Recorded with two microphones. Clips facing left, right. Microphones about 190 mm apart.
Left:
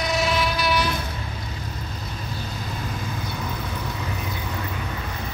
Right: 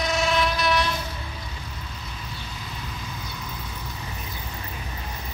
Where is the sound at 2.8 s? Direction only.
55° left (ahead or behind).